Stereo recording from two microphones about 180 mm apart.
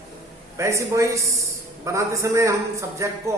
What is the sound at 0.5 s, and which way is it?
A man's voice, 15° right (ahead or behind).